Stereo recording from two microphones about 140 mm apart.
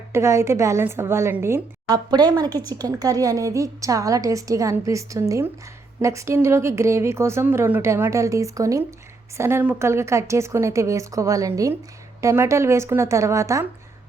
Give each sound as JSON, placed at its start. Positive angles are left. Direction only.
{"t": 0.1, "sound": "a woman's voice", "side_deg": -20}
{"t": 2.0, "sound": "a woman's voice", "side_deg": -30}